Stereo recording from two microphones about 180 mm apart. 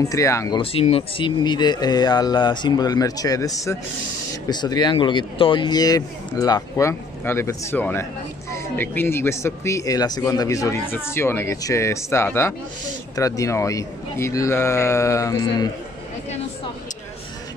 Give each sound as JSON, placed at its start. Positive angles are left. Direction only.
{"t": 0.0, "sound": "speech", "side_deg": 15}
{"t": 0.6, "sound": "speech", "side_deg": 30}